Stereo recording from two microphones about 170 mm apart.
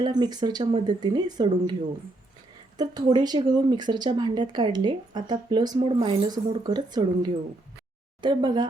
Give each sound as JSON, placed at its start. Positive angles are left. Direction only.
{"t": 0.0, "sound": "speech", "side_deg": -25}
{"t": 2.7, "sound": "speech", "side_deg": -25}